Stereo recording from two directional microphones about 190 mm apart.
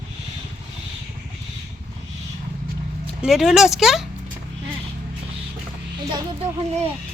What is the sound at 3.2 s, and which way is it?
Speech, centre (ahead or behind).